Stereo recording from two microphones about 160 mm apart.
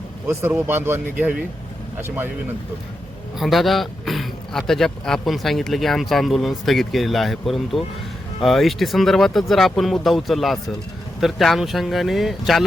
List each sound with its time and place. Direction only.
0.3 s speech: 15° right (ahead or behind)
3.3 s a man's voice: centre (ahead or behind)